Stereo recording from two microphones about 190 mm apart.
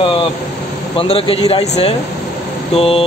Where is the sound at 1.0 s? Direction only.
30° left (ahead or behind).